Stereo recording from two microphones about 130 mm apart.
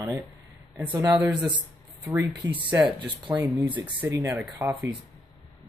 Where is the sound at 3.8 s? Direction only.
35° right (ahead or behind).